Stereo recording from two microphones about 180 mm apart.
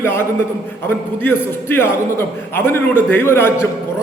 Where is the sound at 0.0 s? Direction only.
15° left (ahead or behind).